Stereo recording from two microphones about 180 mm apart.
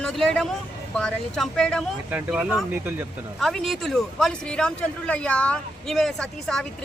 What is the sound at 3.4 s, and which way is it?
Speech, centre (ahead or behind).